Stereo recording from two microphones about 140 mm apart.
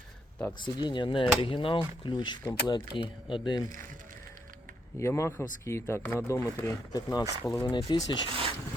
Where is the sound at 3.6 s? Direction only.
75° right (ahead or behind).